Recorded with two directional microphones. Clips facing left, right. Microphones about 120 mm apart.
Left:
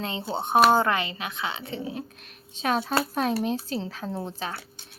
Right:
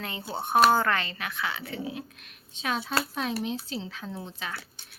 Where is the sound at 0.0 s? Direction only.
25° left (ahead or behind).